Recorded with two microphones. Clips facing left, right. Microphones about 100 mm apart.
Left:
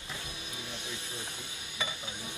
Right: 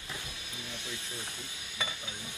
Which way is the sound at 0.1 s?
20° left (ahead or behind).